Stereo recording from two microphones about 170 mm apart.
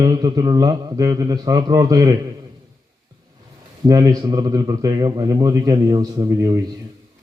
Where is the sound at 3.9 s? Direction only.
20° right (ahead or behind).